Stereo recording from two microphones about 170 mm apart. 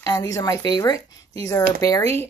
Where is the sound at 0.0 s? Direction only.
20° left (ahead or behind).